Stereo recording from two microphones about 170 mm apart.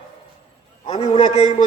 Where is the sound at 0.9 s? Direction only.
25° left (ahead or behind).